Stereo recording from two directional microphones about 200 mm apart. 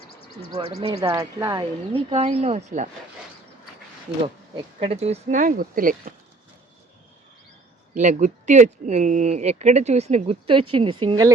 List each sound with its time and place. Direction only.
0.8 s speech: 25° right (ahead or behind)
4.5 s speech: 30° right (ahead or behind)
7.9 s speech: 35° right (ahead or behind)